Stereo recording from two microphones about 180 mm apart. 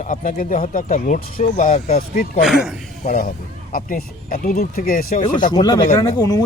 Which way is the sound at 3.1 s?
50° left (ahead or behind).